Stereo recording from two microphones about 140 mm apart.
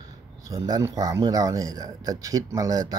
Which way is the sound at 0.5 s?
25° right (ahead or behind).